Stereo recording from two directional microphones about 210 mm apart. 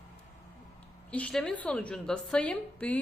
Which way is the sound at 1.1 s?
5° left (ahead or behind).